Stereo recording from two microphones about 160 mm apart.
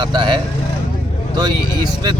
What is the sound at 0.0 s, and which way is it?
Speech, 30° right (ahead or behind).